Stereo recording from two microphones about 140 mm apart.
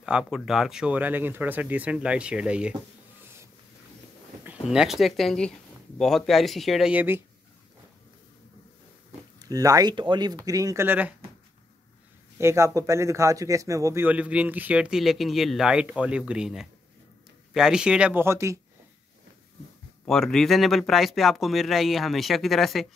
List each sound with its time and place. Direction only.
0.0 s speech: 5° right (ahead or behind)
4.6 s speech: centre (ahead or behind)
9.4 s speech: 25° right (ahead or behind)
12.4 s speech: 20° right (ahead or behind)
14.0 s speech: 10° right (ahead or behind)
20.1 s speech: 5° left (ahead or behind)